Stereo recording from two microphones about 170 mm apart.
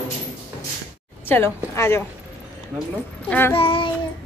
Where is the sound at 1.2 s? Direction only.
15° left (ahead or behind).